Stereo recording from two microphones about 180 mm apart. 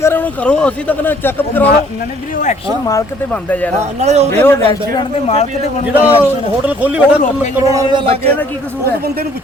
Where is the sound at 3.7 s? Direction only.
35° right (ahead or behind).